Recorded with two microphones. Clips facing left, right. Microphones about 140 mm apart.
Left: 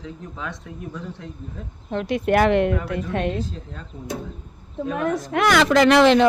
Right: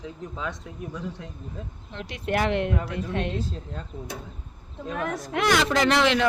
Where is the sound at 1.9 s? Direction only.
55° left (ahead or behind).